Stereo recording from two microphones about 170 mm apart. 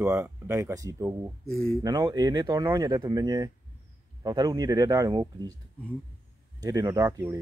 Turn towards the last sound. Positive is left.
turn(degrees=-20)  # may be behind; listen again after turning